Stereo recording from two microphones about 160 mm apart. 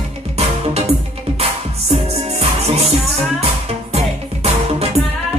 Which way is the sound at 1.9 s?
40° right (ahead or behind).